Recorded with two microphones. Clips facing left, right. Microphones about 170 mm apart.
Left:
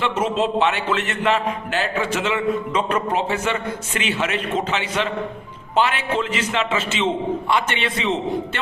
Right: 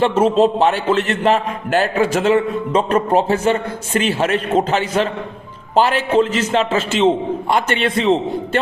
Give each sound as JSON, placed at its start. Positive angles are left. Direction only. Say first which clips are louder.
{"t": 0.0, "sound": "a man's voice", "louder": "right 8 dB", "side_deg": -35}